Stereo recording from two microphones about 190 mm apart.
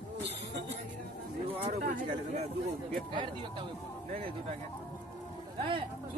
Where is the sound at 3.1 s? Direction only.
25° right (ahead or behind).